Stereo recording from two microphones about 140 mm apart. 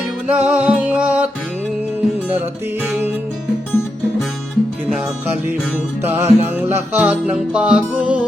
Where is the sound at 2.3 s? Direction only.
10° right (ahead or behind).